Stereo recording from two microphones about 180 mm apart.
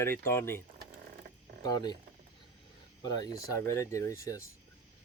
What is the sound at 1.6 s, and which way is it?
Speech, 20° left (ahead or behind).